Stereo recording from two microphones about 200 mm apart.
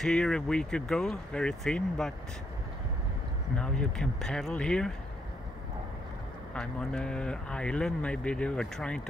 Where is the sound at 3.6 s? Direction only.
5° left (ahead or behind).